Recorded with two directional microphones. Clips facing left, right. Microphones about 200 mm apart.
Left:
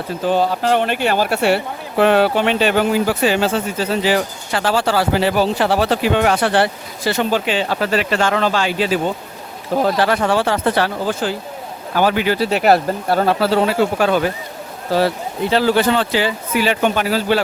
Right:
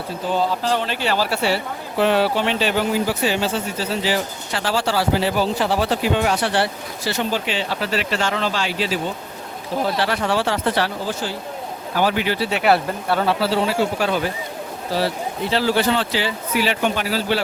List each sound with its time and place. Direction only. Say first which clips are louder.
0.3 s speech: left 4 dB; 65° left (ahead or behind)
15.5 s speech: left 4 dB; 50° left (ahead or behind)